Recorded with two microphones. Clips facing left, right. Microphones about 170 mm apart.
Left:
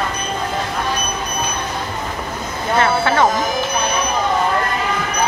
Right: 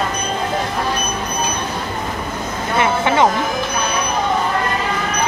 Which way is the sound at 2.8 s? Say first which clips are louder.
Even; 15° right (ahead or behind).